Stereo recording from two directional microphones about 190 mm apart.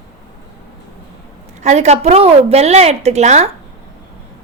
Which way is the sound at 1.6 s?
35° right (ahead or behind).